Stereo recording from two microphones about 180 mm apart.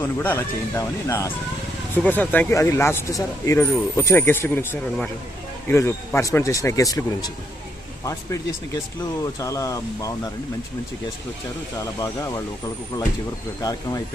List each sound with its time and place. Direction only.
0.2 s speech: 10° left (ahead or behind)
11.8 s speech: 20° left (ahead or behind)